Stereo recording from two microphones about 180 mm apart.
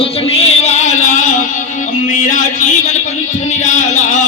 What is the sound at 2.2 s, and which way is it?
Speech, 45° left (ahead or behind).